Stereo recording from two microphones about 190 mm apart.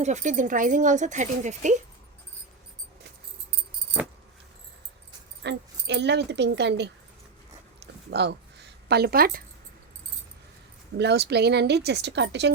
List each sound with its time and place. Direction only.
0.0 s speech: 40° right (ahead or behind)
5.4 s speech: 65° right (ahead or behind)
8.1 s a woman's voice: 65° right (ahead or behind)
10.9 s speech: 60° right (ahead or behind)